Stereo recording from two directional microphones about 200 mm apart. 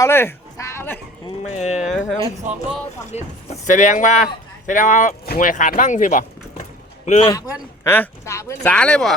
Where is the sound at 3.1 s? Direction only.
35° left (ahead or behind).